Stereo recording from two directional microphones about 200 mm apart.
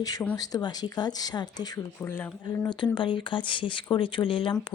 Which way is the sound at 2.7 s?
25° left (ahead or behind).